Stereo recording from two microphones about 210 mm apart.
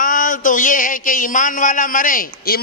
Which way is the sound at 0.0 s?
40° left (ahead or behind).